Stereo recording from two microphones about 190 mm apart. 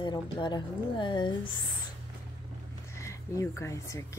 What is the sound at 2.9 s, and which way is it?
Speech, 15° left (ahead or behind).